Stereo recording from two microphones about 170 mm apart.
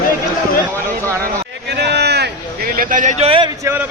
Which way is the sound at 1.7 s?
80° right.